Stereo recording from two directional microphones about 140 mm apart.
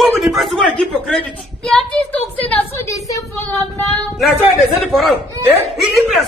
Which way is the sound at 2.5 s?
20° left (ahead or behind).